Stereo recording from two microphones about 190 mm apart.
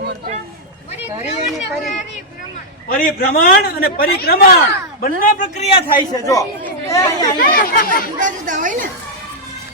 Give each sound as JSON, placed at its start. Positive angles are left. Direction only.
{"t": 1.0, "sound": "a sound", "side_deg": 0}
{"t": 2.9, "sound": "a man's voice", "side_deg": 50}
{"t": 6.0, "sound": "a woman's voice", "side_deg": 15}
{"t": 7.4, "sound": "a man's voice", "side_deg": 50}
{"t": 8.2, "sound": "a woman's voice", "side_deg": -45}